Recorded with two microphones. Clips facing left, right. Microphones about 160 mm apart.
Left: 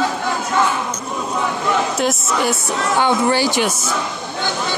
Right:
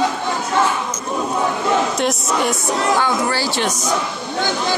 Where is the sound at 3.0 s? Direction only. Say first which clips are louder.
Left 3 dB; 20° left (ahead or behind).